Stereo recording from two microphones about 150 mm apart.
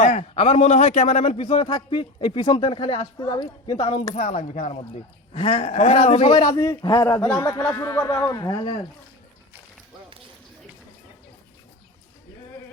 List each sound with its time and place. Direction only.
0.0 s a man's voice: 45° left (ahead or behind); by 4.1 s 30° left (ahead or behind)
4.1 s speech: 50° left (ahead or behind)
6.3 s speech: 25° left (ahead or behind)